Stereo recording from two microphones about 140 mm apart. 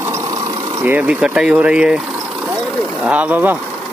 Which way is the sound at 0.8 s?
10° right (ahead or behind).